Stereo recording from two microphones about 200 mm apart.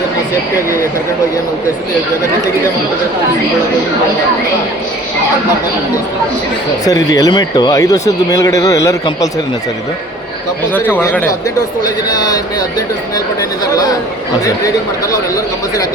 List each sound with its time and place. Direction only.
6.8 s speech: 20° left (ahead or behind)
10.8 s speech: 10° left (ahead or behind)